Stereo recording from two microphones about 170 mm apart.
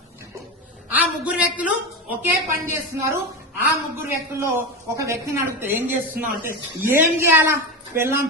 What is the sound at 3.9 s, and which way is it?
Speech, 15° right (ahead or behind).